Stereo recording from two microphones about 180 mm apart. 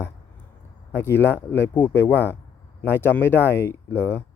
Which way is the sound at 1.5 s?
10° left (ahead or behind).